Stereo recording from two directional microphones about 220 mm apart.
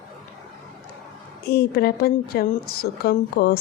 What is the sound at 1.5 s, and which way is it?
Speech, 45° left (ahead or behind).